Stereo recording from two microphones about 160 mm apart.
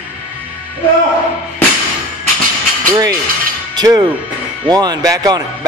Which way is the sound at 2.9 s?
20° right (ahead or behind).